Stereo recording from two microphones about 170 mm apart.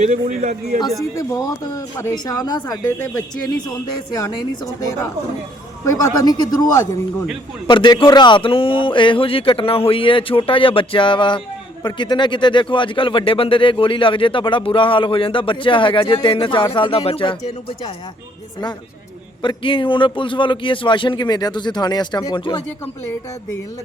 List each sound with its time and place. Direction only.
0.0 s a man's voice: 45° right (ahead or behind)
1.1 s speech: 20° left (ahead or behind)
5.8 s speech: 20° left (ahead or behind); by 17.3 s 35° left (ahead or behind)
19.4 s speech: 30° left (ahead or behind)